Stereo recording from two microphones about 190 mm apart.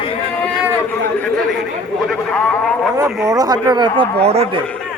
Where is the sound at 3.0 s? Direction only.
15° right (ahead or behind); by 4.6 s 35° right (ahead or behind).